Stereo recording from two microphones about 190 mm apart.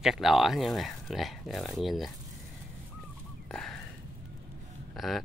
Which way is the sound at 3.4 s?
5° left (ahead or behind).